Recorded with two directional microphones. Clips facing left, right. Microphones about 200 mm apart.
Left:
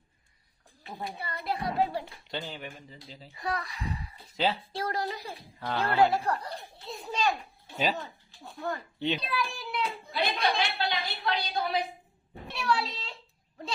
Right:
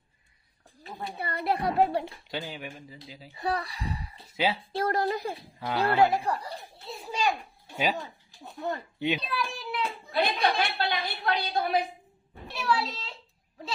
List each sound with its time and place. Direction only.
1.2 s a woman's voice: 60° right (ahead or behind)
2.3 s speech: 10° right (ahead or behind)
3.3 s speech: 30° right (ahead or behind)
4.4 s speech: 10° right (ahead or behind)
4.7 s a woman's voice: 55° right (ahead or behind)
5.5 s a child's voice: 10° right (ahead or behind)
8.4 s speech: 20° right (ahead or behind)
9.0 s a child's voice: 10° right (ahead or behind)
10.6 s a woman's voice: 55° right (ahead or behind)
12.5 s a child's voice: centre (ahead or behind)